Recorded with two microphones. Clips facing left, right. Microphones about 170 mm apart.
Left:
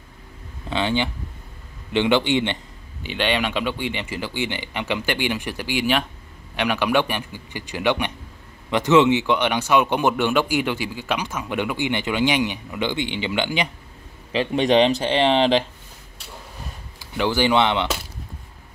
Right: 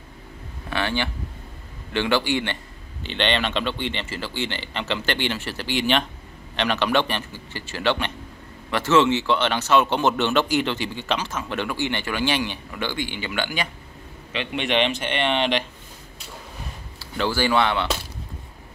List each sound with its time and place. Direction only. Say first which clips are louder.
0.7 s speech: left 3 dB; 20° left (ahead or behind)
14.3 s speech: left 6 dB; 35° left (ahead or behind)
17.0 s speech: left 3 dB; 15° left (ahead or behind)